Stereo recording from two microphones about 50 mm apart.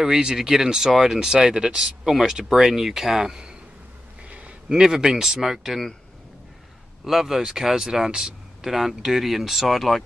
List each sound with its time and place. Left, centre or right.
0.0 s speech: centre
4.2 s a sound: right
4.6 s speech: centre
7.1 s speech: centre